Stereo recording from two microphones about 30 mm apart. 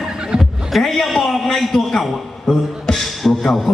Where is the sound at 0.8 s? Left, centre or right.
Centre.